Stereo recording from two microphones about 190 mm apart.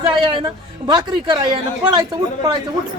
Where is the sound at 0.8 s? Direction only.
20° right (ahead or behind).